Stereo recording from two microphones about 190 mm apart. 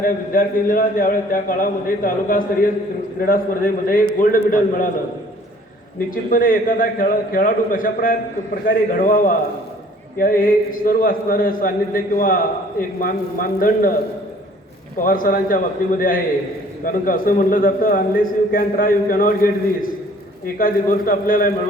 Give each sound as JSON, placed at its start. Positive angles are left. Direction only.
{"t": 0.0, "sound": "a man's voice", "side_deg": 45}
{"t": 6.1, "sound": "a man's voice", "side_deg": 45}
{"t": 14.9, "sound": "a man's voice", "side_deg": 45}
{"t": 20.6, "sound": "a man's voice", "side_deg": 45}